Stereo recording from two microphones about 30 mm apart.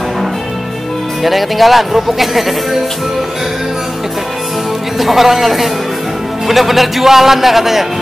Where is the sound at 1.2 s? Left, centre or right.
Centre.